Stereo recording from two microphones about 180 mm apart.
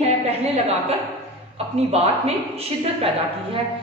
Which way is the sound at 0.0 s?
35° right (ahead or behind).